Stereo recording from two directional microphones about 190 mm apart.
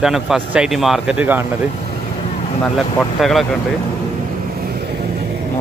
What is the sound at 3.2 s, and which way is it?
Speech, centre (ahead or behind).